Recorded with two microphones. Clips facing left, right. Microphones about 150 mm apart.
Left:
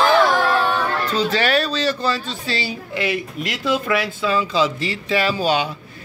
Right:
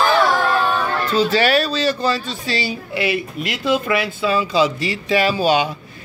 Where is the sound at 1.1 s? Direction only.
5° right (ahead or behind).